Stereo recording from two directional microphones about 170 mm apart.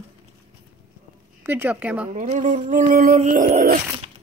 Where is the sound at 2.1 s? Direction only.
45° right (ahead or behind).